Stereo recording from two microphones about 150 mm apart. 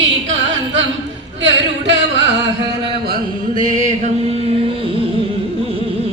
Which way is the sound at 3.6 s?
55° right (ahead or behind).